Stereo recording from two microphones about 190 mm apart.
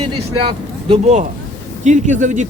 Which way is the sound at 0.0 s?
30° right (ahead or behind).